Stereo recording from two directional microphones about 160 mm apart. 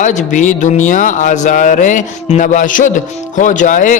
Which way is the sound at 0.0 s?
50° left (ahead or behind).